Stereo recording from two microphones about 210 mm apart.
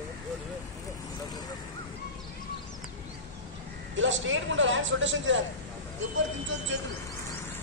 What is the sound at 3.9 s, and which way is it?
A man's voice, 65° right (ahead or behind).